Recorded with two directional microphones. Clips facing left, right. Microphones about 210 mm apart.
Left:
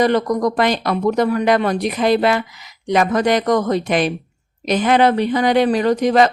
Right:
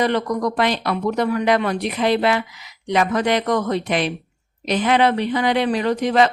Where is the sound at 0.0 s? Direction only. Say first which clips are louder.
Left 4 dB; 40° left (ahead or behind).